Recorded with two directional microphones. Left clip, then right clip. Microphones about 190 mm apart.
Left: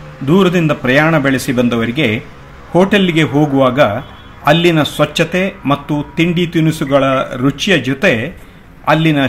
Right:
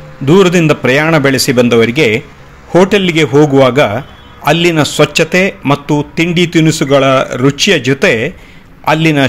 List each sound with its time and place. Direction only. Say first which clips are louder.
0.2 s a man's voice: right 5 dB; 30° right (ahead or behind)